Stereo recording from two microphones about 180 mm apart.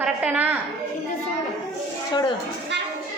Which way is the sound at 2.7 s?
75° right (ahead or behind).